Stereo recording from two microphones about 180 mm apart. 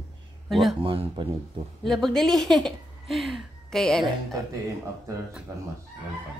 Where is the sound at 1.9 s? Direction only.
Centre (ahead or behind).